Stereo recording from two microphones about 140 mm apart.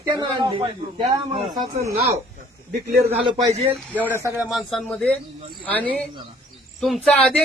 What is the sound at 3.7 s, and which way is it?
A woman's voice, 15° right (ahead or behind).